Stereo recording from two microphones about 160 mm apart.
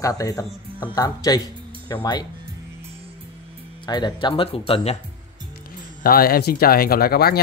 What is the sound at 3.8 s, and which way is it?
Speech, 25° left (ahead or behind).